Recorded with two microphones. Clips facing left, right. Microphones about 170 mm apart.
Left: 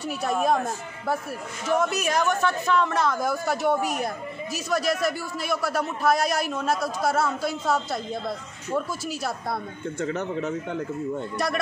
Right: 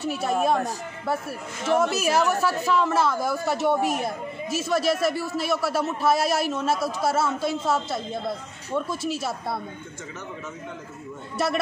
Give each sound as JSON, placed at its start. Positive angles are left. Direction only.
{"t": 0.0, "sound": "speech", "side_deg": 0}
{"t": 1.8, "sound": "speech", "side_deg": -5}
{"t": 9.9, "sound": "speech", "side_deg": 65}
{"t": 11.3, "sound": "speech", "side_deg": -5}